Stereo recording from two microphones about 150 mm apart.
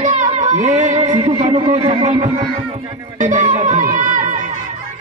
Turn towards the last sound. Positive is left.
turn(degrees=-60)  # may be behind; listen again after turning